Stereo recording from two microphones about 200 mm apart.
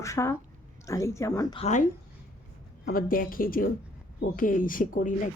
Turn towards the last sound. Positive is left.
turn(degrees=40)  # may be behind; listen again after turning